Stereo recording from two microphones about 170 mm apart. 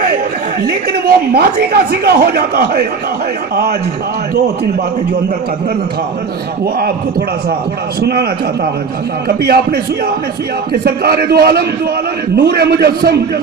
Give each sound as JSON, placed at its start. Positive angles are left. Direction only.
{"t": 0.7, "sound": "a woman's voice", "side_deg": -65}
{"t": 8.0, "sound": "a woman's voice", "side_deg": -65}
{"t": 9.4, "sound": "a man's voice", "side_deg": -65}